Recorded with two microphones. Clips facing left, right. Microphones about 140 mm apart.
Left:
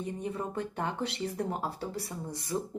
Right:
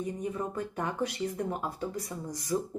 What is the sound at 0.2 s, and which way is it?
A woman's voice, 30° left (ahead or behind).